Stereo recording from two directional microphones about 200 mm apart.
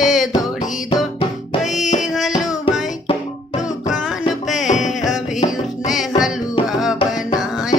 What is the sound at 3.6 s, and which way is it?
Music, 40° left (ahead or behind).